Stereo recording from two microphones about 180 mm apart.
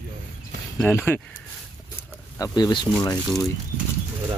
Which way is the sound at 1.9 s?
20° left (ahead or behind).